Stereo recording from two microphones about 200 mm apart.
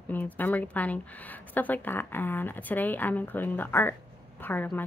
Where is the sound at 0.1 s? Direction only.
10° left (ahead or behind).